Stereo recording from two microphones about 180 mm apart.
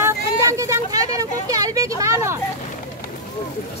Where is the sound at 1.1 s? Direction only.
20° right (ahead or behind).